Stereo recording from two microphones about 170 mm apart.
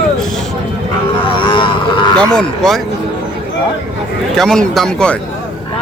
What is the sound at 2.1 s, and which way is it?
Speech, 5° left (ahead or behind).